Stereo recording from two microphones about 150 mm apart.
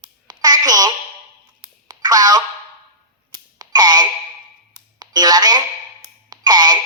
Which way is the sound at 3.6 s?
25° right (ahead or behind).